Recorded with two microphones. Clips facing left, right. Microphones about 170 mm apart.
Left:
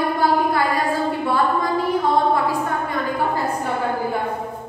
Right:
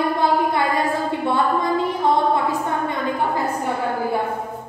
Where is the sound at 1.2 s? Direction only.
20° right (ahead or behind).